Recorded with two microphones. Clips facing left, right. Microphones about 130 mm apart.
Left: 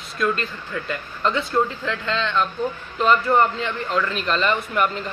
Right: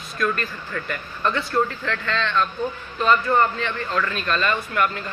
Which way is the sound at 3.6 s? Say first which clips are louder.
Left 1 dB; 20° left (ahead or behind).